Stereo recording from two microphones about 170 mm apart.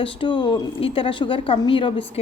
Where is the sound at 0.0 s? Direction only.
30° left (ahead or behind).